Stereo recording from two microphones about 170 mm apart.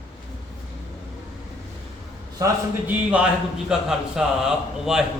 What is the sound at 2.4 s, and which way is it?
Speech, 20° right (ahead or behind).